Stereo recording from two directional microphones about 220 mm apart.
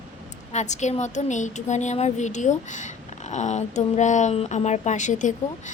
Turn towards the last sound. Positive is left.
turn(degrees=35)  # may be behind; listen again after turning